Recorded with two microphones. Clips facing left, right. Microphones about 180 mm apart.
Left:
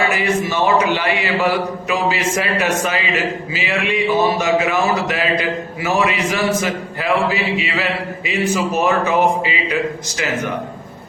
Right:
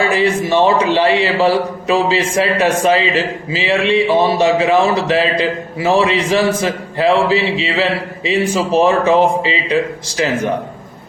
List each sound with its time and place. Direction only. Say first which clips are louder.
0.1 s a man's voice: right 5 dB; 30° right (ahead or behind)